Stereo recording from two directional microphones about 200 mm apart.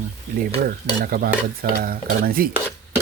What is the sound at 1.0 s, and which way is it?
Speech, 45° right (ahead or behind).